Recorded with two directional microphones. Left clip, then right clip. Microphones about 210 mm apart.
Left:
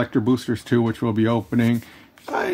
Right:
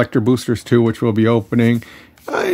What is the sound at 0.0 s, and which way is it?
Speech, 35° right (ahead or behind).